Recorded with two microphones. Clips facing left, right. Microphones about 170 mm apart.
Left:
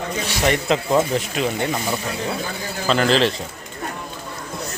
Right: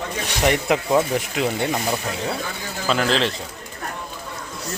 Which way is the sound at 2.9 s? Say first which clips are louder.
Left 3 dB; centre (ahead or behind).